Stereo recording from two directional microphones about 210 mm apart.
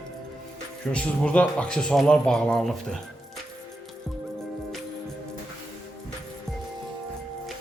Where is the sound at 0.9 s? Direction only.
5° left (ahead or behind).